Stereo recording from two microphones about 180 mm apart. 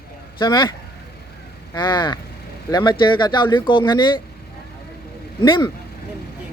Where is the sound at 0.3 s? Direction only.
25° left (ahead or behind).